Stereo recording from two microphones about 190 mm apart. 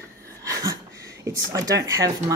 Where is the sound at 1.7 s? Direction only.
20° right (ahead or behind).